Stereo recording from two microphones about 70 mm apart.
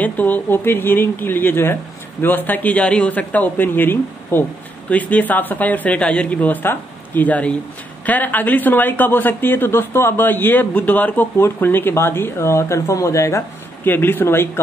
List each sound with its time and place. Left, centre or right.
0.0 s speech: left
13.8 s speech: left